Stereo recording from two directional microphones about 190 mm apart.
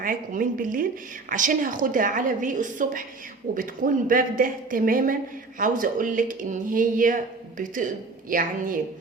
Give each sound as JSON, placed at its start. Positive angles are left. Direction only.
{"t": 0.0, "sound": "a woman's voice", "side_deg": -45}
{"t": 8.3, "sound": "a woman's voice", "side_deg": -45}